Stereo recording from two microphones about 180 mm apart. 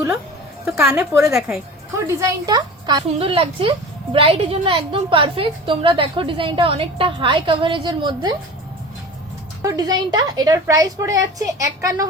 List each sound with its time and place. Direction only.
0.6 s a woman's voice: 5° right (ahead or behind)
0.9 s a woman's voice: 15° right (ahead or behind)
9.6 s a woman's voice: 20° right (ahead or behind)